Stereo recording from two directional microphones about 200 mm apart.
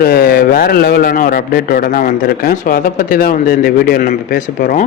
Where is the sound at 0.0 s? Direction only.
50° left (ahead or behind).